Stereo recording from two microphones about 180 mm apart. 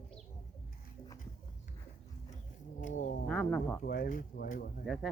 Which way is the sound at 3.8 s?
55° left (ahead or behind).